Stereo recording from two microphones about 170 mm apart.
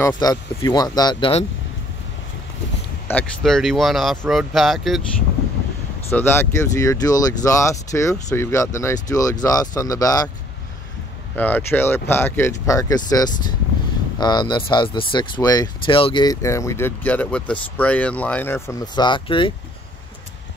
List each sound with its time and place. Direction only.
0.0 s speech: 20° left (ahead or behind)
3.1 s speech: 5° left (ahead or behind)
6.0 s speech: 10° left (ahead or behind)
11.3 s speech: 10° left (ahead or behind)
18.9 s speech: 30° left (ahead or behind)